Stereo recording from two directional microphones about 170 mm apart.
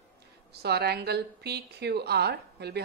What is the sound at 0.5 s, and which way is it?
A woman's voice, 70° right (ahead or behind).